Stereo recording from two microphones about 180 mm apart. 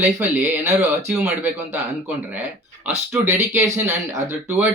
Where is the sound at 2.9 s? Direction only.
15° right (ahead or behind).